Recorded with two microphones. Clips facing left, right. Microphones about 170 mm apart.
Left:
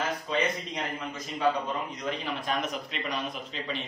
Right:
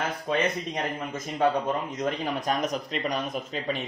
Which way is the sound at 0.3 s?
55° right (ahead or behind).